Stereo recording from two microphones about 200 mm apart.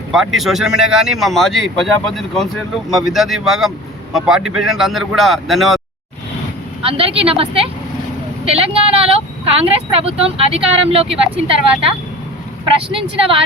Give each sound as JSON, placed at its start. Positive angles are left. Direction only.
{"t": 0.1, "sound": "speech", "side_deg": 0}
{"t": 6.8, "sound": "speech", "side_deg": -30}